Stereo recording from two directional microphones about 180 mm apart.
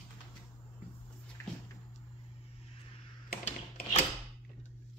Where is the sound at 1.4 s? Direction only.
15° left (ahead or behind).